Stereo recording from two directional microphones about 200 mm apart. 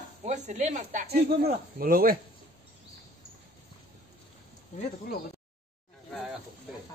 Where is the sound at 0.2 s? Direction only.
35° right (ahead or behind).